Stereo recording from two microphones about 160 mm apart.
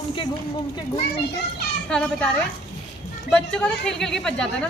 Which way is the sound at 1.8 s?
5° left (ahead or behind).